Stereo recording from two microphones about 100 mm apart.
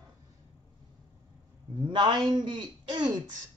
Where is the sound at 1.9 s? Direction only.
50° right (ahead or behind).